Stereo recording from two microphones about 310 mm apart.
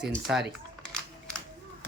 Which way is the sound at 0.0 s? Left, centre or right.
Centre.